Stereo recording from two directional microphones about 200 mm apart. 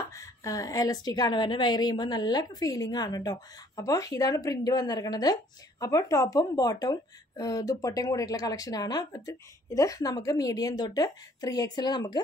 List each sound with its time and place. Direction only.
0.1 s a woman's voice: 15° left (ahead or behind)